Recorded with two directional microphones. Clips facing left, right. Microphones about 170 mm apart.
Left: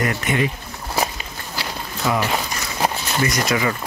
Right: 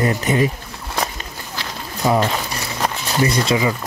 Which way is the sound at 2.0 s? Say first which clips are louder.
Right 4 dB; 35° right (ahead or behind).